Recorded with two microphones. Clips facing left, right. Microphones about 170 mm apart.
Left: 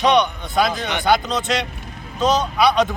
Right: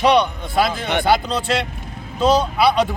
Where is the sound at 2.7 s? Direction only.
10° right (ahead or behind).